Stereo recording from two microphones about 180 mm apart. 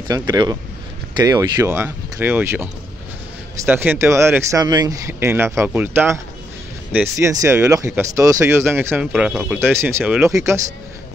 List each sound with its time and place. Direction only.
0.1 s speech: 20° right (ahead or behind)